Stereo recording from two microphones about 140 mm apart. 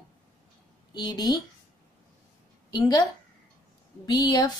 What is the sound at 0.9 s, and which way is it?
Speech, 30° left (ahead or behind).